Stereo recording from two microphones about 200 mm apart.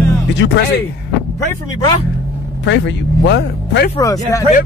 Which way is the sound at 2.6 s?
65° left (ahead or behind).